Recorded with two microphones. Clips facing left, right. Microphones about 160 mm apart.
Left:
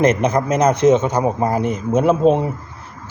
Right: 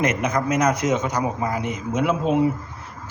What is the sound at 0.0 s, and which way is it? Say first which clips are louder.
Speech: left 6 dB; 30° left (ahead or behind).